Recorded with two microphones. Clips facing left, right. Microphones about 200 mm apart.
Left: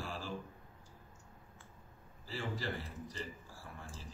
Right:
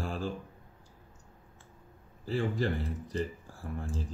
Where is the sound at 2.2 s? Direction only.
55° right (ahead or behind).